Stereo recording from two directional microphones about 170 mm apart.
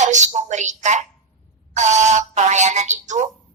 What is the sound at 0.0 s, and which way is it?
A woman's voice, 45° right (ahead or behind).